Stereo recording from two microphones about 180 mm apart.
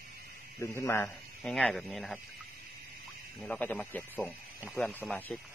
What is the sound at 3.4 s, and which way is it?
A man's voice, 10° left (ahead or behind).